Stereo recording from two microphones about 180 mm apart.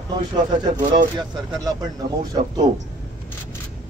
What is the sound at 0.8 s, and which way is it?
Speech, 45° right (ahead or behind).